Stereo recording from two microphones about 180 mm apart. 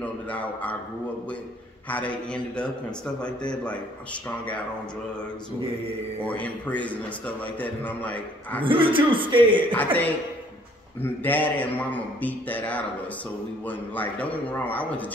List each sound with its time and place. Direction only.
0.0 s a man's voice: 10° left (ahead or behind)
1.9 s a man's voice: 10° left (ahead or behind)
6.2 s a man's voice: 10° left (ahead or behind)
8.6 s speech: 30° right (ahead or behind)
9.7 s a man's voice: 10° left (ahead or behind)
11.2 s a man's voice: 10° left (ahead or behind)